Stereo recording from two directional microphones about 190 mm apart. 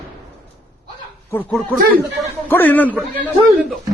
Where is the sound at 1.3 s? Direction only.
10° left (ahead or behind).